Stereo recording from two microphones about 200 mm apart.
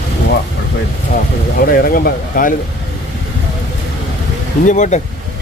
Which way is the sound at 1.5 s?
45° left (ahead or behind).